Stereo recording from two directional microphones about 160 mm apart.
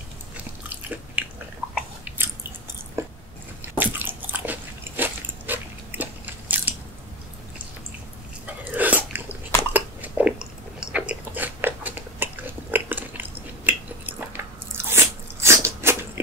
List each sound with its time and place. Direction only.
0.7 s biting: 10° right (ahead or behind)
2.0 s chewing: 15° right (ahead or behind)
3.0 s biting: 15° right (ahead or behind)
8.7 s biting: 10° right (ahead or behind)
15.4 s a sound: 15° right (ahead or behind)